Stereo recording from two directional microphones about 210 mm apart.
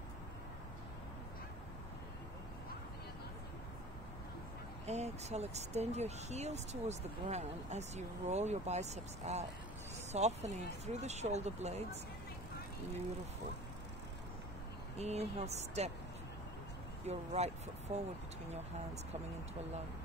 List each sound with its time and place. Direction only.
4.8 s speech: 30° right (ahead or behind)
15.0 s speech: 30° right (ahead or behind)
17.0 s speech: 30° right (ahead or behind)